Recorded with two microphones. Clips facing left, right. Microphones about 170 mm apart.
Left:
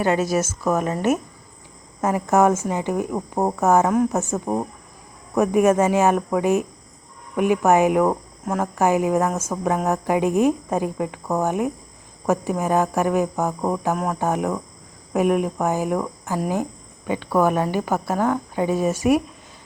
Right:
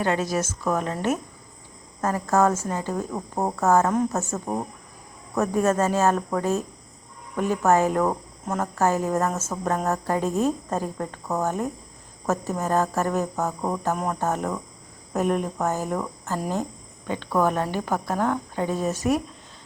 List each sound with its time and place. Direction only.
0.0 s a woman's voice: 10° left (ahead or behind)